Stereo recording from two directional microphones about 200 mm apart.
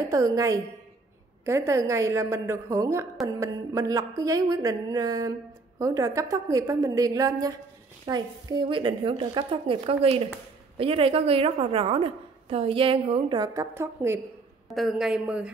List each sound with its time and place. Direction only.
0.1 s a woman's voice: 15° right (ahead or behind)
14.7 s a woman's voice: centre (ahead or behind)